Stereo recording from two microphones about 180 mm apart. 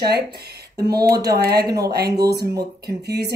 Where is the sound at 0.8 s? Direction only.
60° right (ahead or behind).